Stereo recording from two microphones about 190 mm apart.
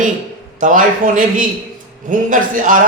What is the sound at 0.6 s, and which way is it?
A man's voice, 45° right (ahead or behind).